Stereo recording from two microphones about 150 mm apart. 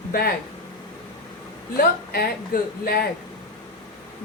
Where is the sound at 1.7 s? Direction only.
90° left.